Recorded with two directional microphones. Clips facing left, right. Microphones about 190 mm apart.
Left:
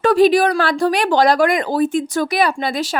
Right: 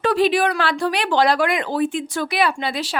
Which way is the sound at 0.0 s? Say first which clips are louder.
Left 5 dB; 45° left (ahead or behind).